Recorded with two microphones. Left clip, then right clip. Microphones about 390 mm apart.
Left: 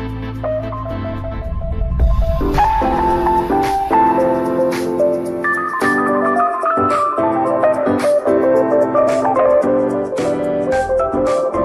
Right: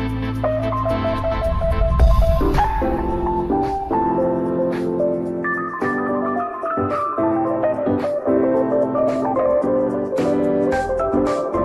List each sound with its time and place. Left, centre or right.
2.4 s music: centre